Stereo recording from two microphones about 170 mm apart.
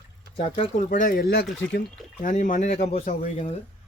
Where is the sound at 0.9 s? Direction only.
50° left (ahead or behind); by 1.5 s 70° left (ahead or behind).